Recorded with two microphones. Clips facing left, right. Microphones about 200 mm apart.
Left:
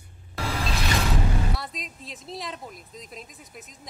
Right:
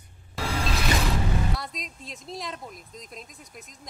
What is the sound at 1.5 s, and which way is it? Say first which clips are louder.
Speech: even; centre (ahead or behind).